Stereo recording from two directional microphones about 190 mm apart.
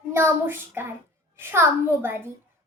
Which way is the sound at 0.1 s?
15° right (ahead or behind).